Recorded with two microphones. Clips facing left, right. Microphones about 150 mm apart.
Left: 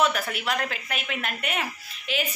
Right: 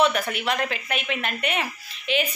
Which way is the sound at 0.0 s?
Centre (ahead or behind).